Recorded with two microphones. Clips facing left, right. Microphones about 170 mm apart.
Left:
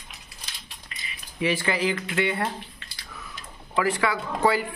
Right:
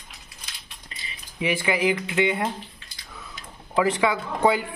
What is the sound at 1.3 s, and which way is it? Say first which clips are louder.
Speech: right 1 dB; 15° right (ahead or behind).